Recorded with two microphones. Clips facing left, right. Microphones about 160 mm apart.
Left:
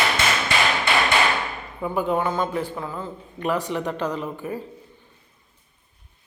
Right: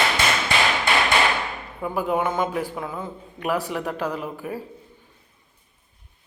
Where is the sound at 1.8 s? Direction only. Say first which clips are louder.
Left 1 dB; 5° right (ahead or behind).